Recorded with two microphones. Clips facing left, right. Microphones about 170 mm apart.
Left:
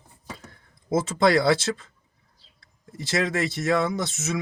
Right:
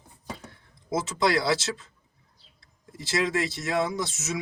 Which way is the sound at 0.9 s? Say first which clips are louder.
Left 5 dB; 50° left (ahead or behind).